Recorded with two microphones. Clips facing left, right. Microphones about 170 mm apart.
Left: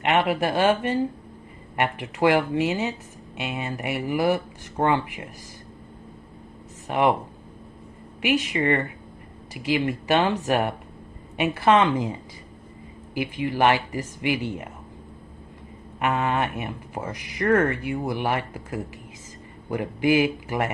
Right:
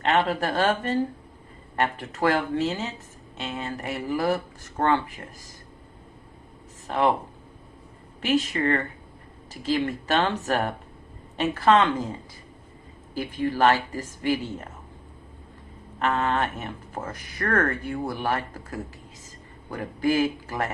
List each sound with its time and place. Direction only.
0.0 s speech: 15° left (ahead or behind)
6.8 s speech: 15° left (ahead or behind)
8.2 s speech: 15° left (ahead or behind)
13.1 s speech: 15° left (ahead or behind)
16.0 s speech: 15° left (ahead or behind)